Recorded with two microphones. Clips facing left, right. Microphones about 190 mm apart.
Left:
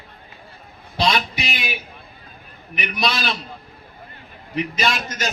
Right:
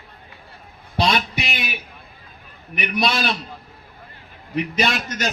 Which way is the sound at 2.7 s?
55° right (ahead or behind).